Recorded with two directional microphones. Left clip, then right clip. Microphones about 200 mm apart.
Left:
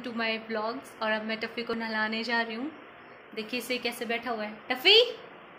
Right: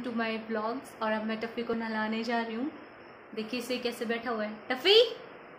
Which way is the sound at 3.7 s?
10° right (ahead or behind).